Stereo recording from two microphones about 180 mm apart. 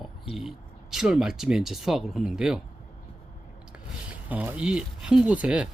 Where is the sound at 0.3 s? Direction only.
Centre (ahead or behind).